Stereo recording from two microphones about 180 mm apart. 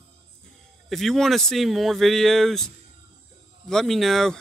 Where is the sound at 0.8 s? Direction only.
Centre (ahead or behind).